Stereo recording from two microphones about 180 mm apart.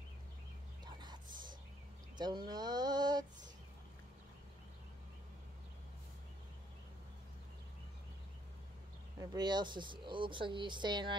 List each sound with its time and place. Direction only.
0.9 s whispering: 25° right (ahead or behind)
2.1 s a sound: 25° right (ahead or behind)
9.2 s speech: 20° right (ahead or behind)